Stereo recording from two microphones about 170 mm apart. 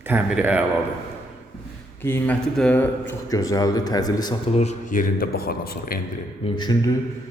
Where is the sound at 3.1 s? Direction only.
20° left (ahead or behind).